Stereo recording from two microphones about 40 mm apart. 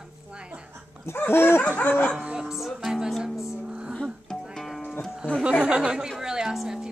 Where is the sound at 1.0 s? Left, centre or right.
Left.